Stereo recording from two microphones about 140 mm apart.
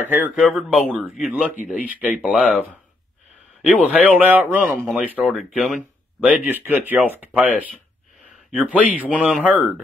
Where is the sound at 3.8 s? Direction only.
10° right (ahead or behind).